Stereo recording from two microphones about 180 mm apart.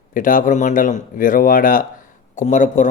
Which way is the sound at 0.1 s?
50° left (ahead or behind).